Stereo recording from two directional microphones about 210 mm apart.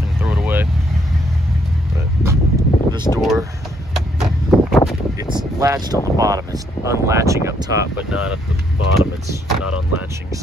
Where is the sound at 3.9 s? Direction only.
Centre (ahead or behind).